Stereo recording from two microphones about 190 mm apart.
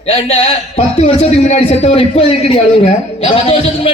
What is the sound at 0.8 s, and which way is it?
A man's voice, 30° left (ahead or behind).